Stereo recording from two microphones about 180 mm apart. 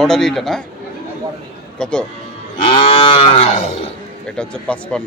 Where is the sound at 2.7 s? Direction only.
30° left (ahead or behind).